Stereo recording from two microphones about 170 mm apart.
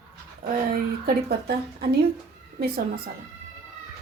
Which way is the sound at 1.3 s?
70° right (ahead or behind).